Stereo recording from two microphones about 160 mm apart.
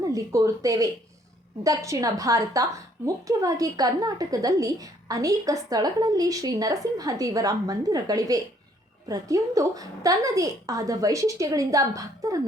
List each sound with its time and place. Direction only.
0.0 s a woman's voice: 20° right (ahead or behind)